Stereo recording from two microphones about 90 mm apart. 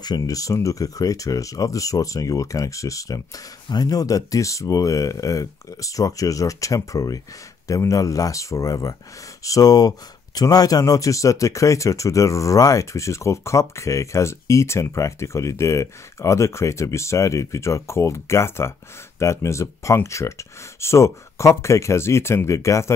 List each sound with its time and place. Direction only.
0.0 s speech: 45° left (ahead or behind)